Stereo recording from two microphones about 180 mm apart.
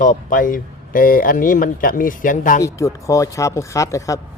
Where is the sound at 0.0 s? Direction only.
50° left (ahead or behind).